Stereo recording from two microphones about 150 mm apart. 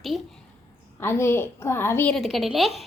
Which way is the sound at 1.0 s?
15° left (ahead or behind).